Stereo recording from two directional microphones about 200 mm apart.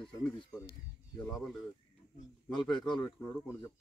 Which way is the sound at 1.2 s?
Centre (ahead or behind).